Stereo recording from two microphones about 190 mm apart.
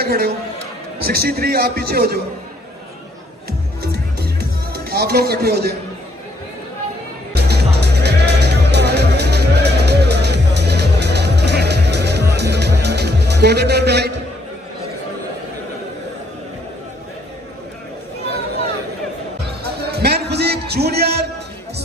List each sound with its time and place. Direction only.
0.0 s a man's voice: 60° right (ahead or behind)
3.4 s music: 60° right (ahead or behind)
7.3 s music: 60° right (ahead or behind)
19.4 s music: 60° right (ahead or behind)